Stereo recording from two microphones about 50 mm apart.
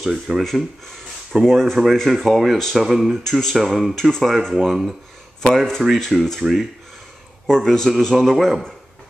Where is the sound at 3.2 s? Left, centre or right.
Centre.